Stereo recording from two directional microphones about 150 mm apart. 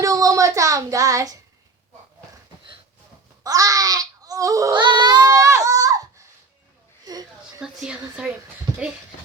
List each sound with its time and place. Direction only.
0.0 s child singing: 25° right (ahead or behind)
3.4 s babbling: 25° right (ahead or behind)
7.0 s a sound: 25° right (ahead or behind)
7.6 s a woman's voice: 5° right (ahead or behind)